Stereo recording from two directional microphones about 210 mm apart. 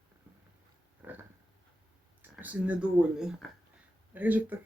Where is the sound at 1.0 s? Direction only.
10° right (ahead or behind).